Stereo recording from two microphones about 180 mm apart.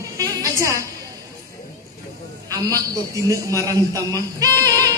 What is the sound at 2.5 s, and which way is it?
A man's voice, 20° right (ahead or behind).